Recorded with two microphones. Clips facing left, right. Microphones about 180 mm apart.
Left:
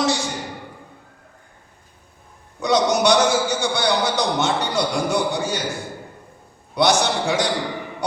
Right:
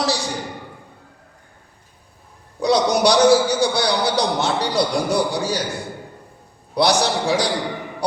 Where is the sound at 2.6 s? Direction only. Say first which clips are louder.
Right 1 dB; 35° right (ahead or behind).